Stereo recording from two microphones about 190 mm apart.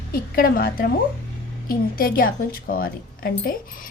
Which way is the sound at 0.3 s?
50° left (ahead or behind).